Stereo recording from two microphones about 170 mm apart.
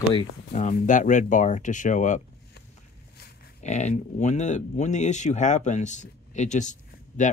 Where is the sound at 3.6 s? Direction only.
45° left (ahead or behind).